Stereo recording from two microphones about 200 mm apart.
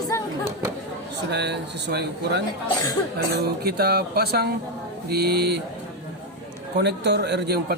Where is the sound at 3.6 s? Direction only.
50° right (ahead or behind).